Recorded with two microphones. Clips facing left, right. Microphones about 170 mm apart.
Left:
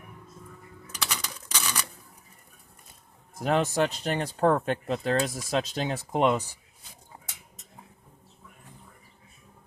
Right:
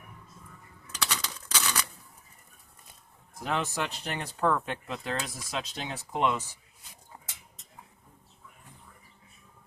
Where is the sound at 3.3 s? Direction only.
40° left (ahead or behind).